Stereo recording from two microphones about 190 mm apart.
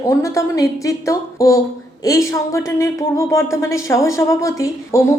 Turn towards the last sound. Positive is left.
turn(degrees=15)  # may be behind; listen again after turning